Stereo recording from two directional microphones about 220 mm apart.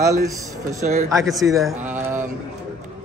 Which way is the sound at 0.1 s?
15° right (ahead or behind).